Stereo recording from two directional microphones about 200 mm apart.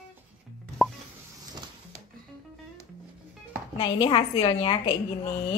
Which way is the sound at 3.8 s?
25° left (ahead or behind).